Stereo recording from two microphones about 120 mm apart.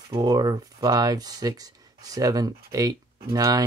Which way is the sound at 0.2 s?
35° right (ahead or behind).